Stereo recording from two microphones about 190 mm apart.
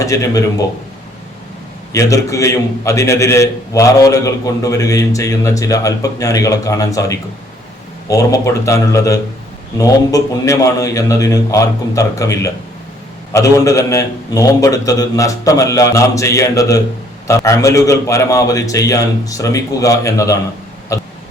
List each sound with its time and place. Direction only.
0.0 s a man's voice: 15° left (ahead or behind)
1.9 s a man's voice: 15° left (ahead or behind)